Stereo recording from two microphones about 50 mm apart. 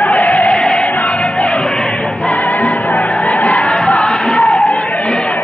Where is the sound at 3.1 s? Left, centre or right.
Left.